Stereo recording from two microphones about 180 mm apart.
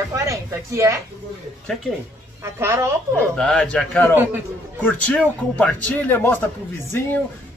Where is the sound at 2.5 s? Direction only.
15° right (ahead or behind).